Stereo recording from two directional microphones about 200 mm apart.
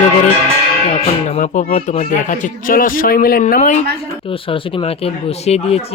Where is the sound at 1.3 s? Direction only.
40° left (ahead or behind).